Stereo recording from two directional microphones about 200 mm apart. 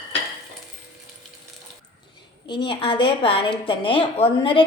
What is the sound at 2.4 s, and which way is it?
A woman's voice, 25° left (ahead or behind).